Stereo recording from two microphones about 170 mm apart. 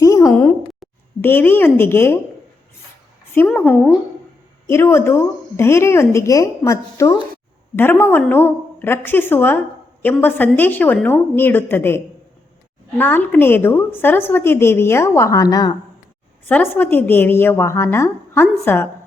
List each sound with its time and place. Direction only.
0.0 s a sound: 20° left (ahead or behind)
1.2 s a woman's voice: 10° left (ahead or behind)
3.3 s a woman's voice: 10° left (ahead or behind)
16.5 s a woman's voice: 10° left (ahead or behind)